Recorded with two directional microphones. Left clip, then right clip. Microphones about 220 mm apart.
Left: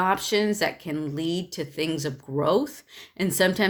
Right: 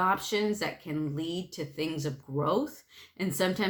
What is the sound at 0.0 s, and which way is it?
Speech, 40° left (ahead or behind).